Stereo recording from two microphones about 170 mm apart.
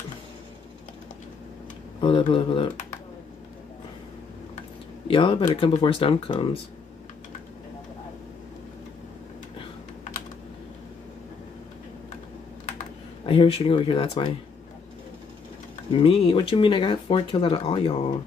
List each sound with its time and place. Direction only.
2.0 s speech: 30° left (ahead or behind)
5.0 s speech: 30° left (ahead or behind)
13.2 s speech: 30° left (ahead or behind)
15.9 s speech: 30° left (ahead or behind)